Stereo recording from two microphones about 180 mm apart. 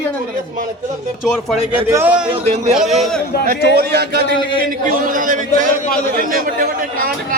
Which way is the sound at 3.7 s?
65° right (ahead or behind).